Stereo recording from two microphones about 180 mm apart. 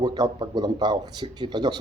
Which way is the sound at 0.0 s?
25° right (ahead or behind).